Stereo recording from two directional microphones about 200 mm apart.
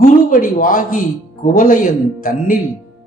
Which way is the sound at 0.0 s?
40° left (ahead or behind).